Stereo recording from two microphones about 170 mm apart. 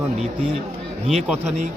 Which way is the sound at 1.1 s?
Centre (ahead or behind).